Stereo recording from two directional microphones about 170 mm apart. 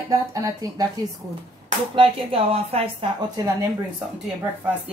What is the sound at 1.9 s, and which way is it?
A woman's voice, 30° right (ahead or behind).